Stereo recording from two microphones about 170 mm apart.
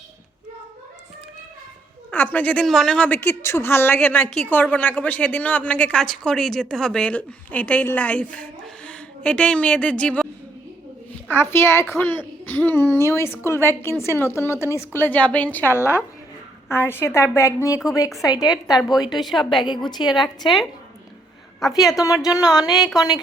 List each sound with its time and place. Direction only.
2.0 s a woman's voice: 10° left (ahead or behind)
11.3 s a woman's voice: 15° left (ahead or behind)
19.1 s a woman's voice: centre (ahead or behind)
19.6 s speech: 25° left (ahead or behind)
20.1 s a woman's voice: centre (ahead or behind)
22.0 s speech: 20° left (ahead or behind)
22.7 s a woman's voice: centre (ahead or behind)
23.0 s speech: 25° left (ahead or behind)